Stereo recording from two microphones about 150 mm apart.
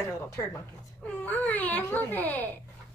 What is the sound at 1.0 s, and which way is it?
A child's voice, 10° left (ahead or behind).